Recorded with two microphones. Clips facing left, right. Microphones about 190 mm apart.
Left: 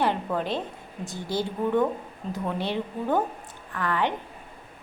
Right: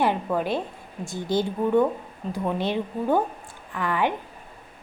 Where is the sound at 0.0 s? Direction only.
10° right (ahead or behind).